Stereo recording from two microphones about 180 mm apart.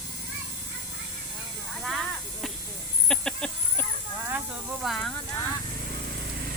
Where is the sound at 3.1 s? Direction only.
5° left (ahead or behind).